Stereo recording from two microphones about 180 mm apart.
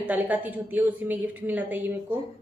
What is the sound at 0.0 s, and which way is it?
A woman's voice, 10° right (ahead or behind).